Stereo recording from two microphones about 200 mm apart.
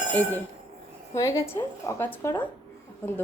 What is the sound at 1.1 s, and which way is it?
A woman's voice, 15° left (ahead or behind).